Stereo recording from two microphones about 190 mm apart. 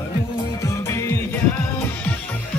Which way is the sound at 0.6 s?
15° left (ahead or behind).